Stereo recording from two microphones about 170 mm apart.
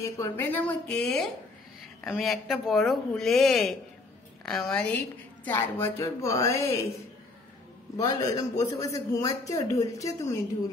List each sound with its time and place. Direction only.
0.0 s speech: 15° left (ahead or behind)
8.0 s a man's voice: 20° left (ahead or behind)